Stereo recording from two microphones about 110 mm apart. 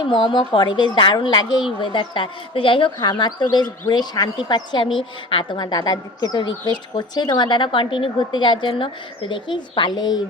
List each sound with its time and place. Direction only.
0.0 s a woman's voice: 45° left (ahead or behind)